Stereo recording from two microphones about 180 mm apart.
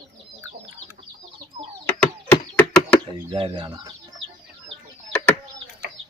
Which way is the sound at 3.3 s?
30° right (ahead or behind).